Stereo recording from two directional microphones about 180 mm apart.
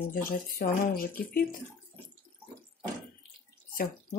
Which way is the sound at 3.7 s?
50° left (ahead or behind).